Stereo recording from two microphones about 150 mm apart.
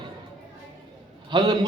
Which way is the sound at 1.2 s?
30° right (ahead or behind).